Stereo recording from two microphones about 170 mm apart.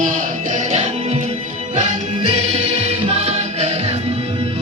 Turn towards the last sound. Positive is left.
turn(degrees=-35)  # may be behind; listen again after turning